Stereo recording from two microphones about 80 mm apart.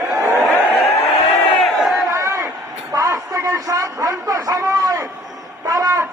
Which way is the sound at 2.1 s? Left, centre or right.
Right.